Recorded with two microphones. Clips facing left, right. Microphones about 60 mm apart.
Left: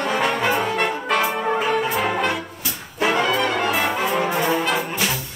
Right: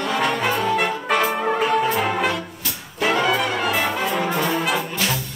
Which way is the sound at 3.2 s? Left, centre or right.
Centre.